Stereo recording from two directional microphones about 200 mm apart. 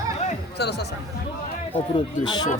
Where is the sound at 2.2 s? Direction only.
20° left (ahead or behind).